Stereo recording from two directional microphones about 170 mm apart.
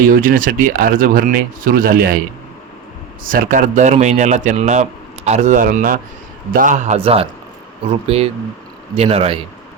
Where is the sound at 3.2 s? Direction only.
50° right (ahead or behind); by 9.4 s 35° right (ahead or behind).